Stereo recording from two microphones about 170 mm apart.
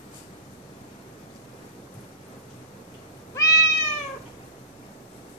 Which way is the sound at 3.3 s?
20° left (ahead or behind).